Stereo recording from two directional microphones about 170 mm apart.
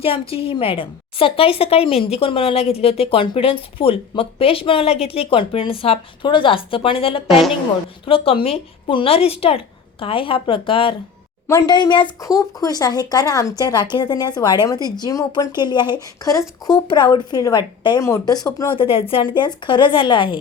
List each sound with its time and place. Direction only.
0.0 s a woman's voice: 35° left (ahead or behind)
7.3 s a woman's voice: centre (ahead or behind)
8.0 s a woman's voice: 35° left (ahead or behind)
18.6 s speech: 30° left (ahead or behind)